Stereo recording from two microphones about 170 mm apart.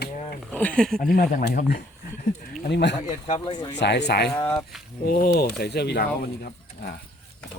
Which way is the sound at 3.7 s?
90° left.